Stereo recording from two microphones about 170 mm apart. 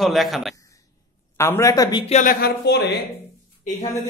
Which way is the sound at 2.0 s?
45° left (ahead or behind).